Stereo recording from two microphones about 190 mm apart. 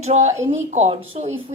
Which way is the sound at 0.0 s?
35° right (ahead or behind).